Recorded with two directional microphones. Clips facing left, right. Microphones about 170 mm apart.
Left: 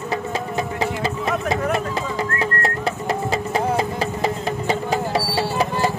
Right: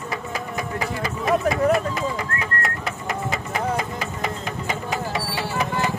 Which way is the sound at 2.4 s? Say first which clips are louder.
Left 5 dB; 30° left (ahead or behind).